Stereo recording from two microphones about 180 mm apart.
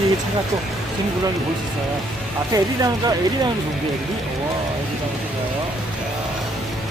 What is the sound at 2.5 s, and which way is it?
Speech, 20° right (ahead or behind).